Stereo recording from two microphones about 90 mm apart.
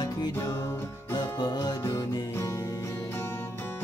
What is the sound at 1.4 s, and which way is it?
Music, 50° left (ahead or behind).